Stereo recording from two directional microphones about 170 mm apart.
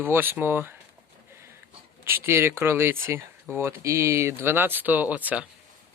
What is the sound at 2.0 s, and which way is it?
Speech, 15° right (ahead or behind).